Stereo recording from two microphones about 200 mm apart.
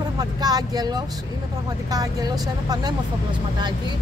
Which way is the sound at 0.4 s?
20° right (ahead or behind).